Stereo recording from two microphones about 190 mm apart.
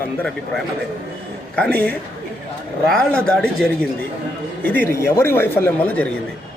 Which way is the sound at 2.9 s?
5° left (ahead or behind).